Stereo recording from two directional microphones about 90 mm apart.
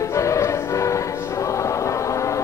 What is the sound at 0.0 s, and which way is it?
Music, 35° left (ahead or behind).